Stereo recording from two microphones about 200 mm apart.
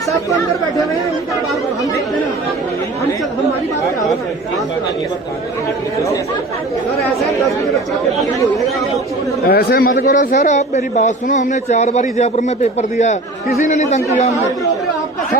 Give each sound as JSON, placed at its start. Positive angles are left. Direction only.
{"t": 9.5, "sound": "a man's voice", "side_deg": 50}